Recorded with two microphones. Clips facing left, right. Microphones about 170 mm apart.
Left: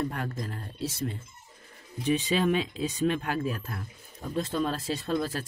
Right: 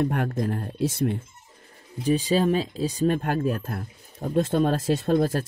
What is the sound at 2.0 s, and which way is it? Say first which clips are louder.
Speech: right 4 dB; 35° right (ahead or behind).